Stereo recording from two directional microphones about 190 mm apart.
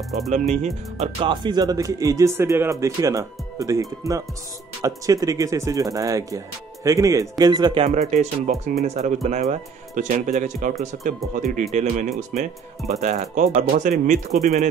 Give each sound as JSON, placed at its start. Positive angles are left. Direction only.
{"t": 0.3, "sound": "speech", "side_deg": -40}